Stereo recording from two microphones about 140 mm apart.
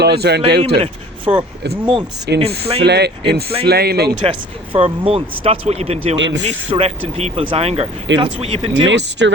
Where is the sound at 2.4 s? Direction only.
45° right (ahead or behind).